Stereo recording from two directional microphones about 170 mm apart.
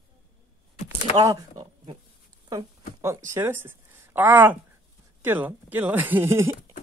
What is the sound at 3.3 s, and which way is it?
A woman's voice, 15° right (ahead or behind).